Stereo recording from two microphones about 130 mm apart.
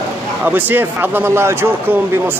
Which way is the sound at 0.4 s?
15° right (ahead or behind).